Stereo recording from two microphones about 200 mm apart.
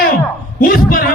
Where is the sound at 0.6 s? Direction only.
45° left (ahead or behind).